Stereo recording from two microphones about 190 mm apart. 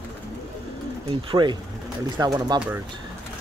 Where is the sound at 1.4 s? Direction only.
20° right (ahead or behind).